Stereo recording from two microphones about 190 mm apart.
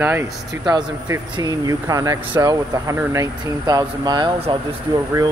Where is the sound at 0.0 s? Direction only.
15° right (ahead or behind).